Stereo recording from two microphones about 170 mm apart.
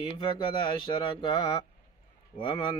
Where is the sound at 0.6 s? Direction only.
30° left (ahead or behind).